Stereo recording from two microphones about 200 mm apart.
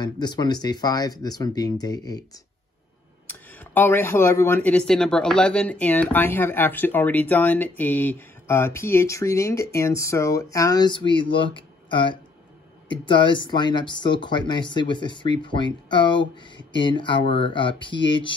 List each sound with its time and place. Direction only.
0.0 s speech: 20° left (ahead or behind)